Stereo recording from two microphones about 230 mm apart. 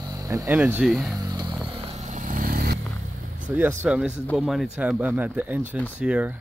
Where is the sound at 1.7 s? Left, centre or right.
Right.